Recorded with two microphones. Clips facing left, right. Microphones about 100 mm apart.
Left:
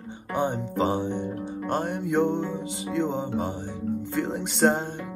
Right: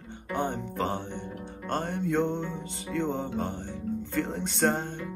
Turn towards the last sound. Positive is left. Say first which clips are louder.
# left 4 dB
turn(degrees=15)  # may be behind; listen again after turning